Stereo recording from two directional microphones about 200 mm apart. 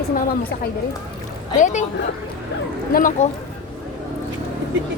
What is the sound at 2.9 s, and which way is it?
Speech, 45° left (ahead or behind).